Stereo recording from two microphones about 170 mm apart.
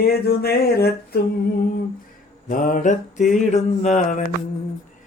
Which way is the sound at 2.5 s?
50° left (ahead or behind).